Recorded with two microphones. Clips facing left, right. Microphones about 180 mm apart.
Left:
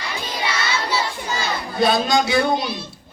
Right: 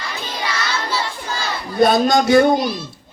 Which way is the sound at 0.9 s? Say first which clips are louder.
Left 1 dB; centre (ahead or behind).